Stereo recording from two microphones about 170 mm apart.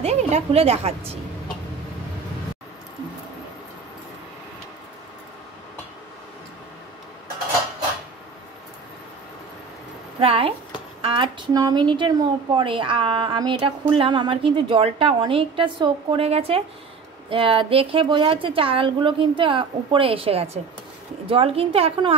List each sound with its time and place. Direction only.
0.0 s speech: 40° right (ahead or behind)
10.2 s speech: 35° right (ahead or behind)